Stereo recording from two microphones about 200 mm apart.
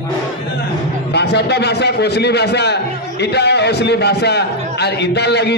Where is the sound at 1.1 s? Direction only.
55° left (ahead or behind).